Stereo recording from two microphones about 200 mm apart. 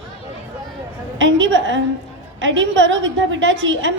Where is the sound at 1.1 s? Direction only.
70° right (ahead or behind).